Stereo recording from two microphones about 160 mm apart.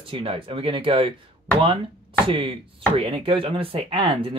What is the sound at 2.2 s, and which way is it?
Speech, 35° right (ahead or behind).